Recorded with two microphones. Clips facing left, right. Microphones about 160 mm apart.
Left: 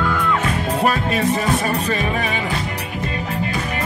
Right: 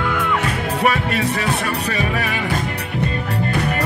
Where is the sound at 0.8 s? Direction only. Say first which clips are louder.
Even; 70° right (ahead or behind).